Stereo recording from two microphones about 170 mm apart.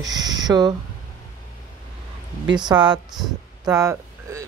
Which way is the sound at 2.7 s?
25° right (ahead or behind).